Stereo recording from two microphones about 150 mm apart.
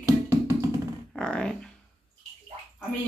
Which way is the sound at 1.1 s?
5° left (ahead or behind).